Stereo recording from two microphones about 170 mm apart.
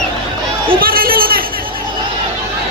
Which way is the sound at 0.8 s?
60° right (ahead or behind).